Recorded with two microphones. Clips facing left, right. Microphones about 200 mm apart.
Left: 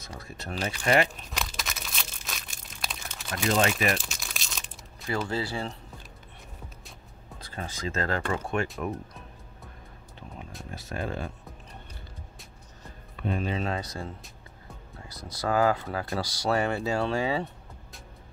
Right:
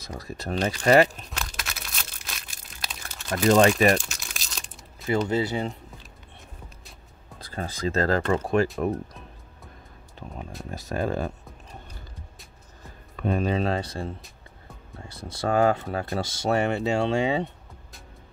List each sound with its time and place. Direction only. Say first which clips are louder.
0.2 s speech: right 6 dB; 35° right (ahead or behind)
1.3 s crumpling: left 1 dB; centre (ahead or behind)
3.4 s speech: right 7 dB; 40° right (ahead or behind)
4.0 s tearing: even; centre (ahead or behind)
5.3 s speech: right 6 dB; 20° right (ahead or behind)
7.3 s speech: right 4 dB; 35° right (ahead or behind)
10.7 s speech: right 6 dB; 40° right (ahead or behind)
13.1 s speech: right 5 dB; 45° right (ahead or behind); by 17.5 s 25° right (ahead or behind)